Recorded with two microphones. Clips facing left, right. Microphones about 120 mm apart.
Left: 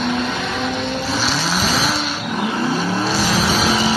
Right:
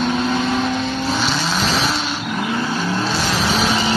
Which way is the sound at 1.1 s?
Centre (ahead or behind).